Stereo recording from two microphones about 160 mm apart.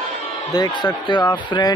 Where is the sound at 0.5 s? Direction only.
25° left (ahead or behind).